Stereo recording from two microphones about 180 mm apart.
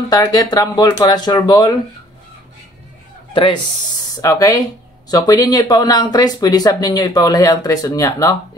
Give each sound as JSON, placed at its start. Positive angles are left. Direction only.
{"t": 0.1, "sound": "speech", "side_deg": 20}
{"t": 4.1, "sound": "speech", "side_deg": 20}